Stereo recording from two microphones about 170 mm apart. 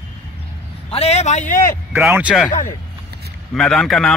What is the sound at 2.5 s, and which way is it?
Speech, 50° left (ahead or behind).